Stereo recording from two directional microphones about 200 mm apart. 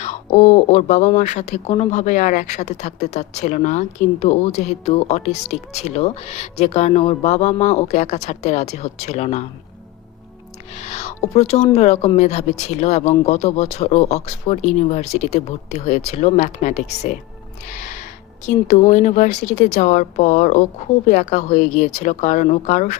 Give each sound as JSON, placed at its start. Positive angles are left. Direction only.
{"t": 0.0, "sound": "speech", "side_deg": 35}
{"t": 10.8, "sound": "speech", "side_deg": 35}